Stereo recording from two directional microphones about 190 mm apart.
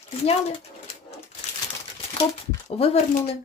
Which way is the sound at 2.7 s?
30° left (ahead or behind).